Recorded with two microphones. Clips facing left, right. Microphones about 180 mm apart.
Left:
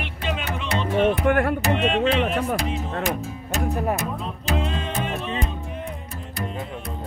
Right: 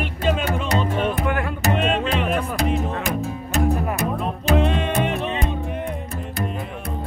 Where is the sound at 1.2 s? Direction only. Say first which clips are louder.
Left 4 dB; 50° left (ahead or behind).